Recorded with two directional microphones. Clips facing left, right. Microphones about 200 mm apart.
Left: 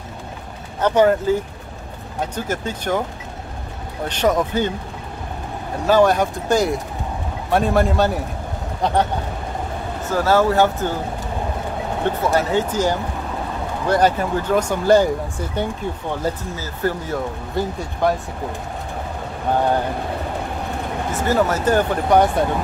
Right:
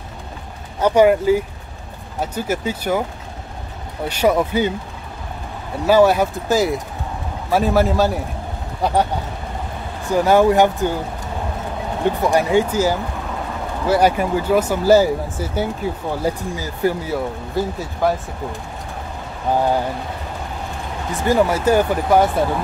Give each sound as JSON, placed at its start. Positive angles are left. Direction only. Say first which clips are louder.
{"t": 0.7, "sound": "speech", "louder": "right 2 dB", "side_deg": -10}
{"t": 4.0, "sound": "speech", "louder": "right 2 dB", "side_deg": -10}
{"t": 5.9, "sound": "speech", "louder": "right 2 dB", "side_deg": -10}
{"t": 10.0, "sound": "speech", "louder": "right 3 dB", "side_deg": -15}
{"t": 12.0, "sound": "speech", "louder": "right 2 dB", "side_deg": -15}
{"t": 21.3, "sound": "speech", "louder": "right 3 dB", "side_deg": -10}